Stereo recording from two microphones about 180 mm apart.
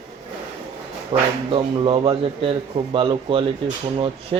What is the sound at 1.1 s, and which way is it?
Speech, 30° right (ahead or behind).